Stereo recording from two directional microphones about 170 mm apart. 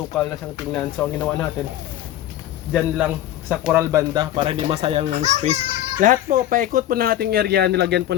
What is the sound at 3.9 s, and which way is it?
A child's voice, 25° right (ahead or behind).